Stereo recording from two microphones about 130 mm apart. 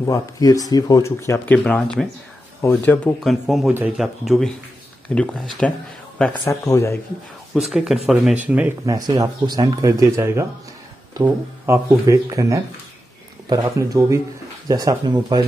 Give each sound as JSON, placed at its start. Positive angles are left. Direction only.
{"t": 0.0, "sound": "speech", "side_deg": 25}
{"t": 3.3, "sound": "speech", "side_deg": 0}
{"t": 6.4, "sound": "speech", "side_deg": 25}
{"t": 7.5, "sound": "speech", "side_deg": -5}
{"t": 8.8, "sound": "speech", "side_deg": -25}